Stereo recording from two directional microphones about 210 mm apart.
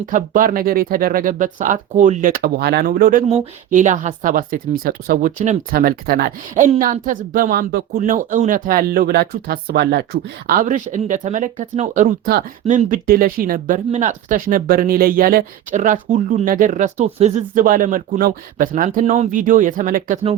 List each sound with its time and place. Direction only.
0.0 s speech: 40° right (ahead or behind)
10.5 s speech: 40° right (ahead or behind)